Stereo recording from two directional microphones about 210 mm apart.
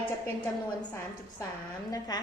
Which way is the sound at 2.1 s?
20° left (ahead or behind).